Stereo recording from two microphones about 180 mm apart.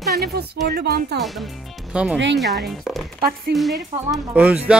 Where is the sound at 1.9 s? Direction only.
5° right (ahead or behind).